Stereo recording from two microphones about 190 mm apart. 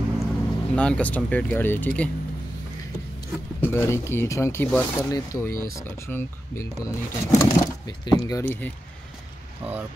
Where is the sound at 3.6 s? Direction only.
15° left (ahead or behind).